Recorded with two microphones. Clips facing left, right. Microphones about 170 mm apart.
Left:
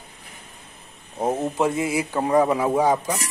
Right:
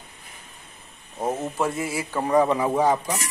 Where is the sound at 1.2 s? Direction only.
15° left (ahead or behind).